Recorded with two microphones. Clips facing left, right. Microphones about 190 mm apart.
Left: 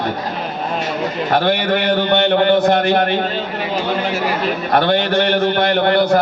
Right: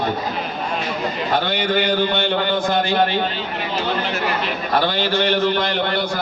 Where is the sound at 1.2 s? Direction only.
65° left (ahead or behind).